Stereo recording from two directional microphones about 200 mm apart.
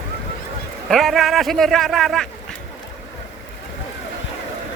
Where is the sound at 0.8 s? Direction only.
Centre (ahead or behind).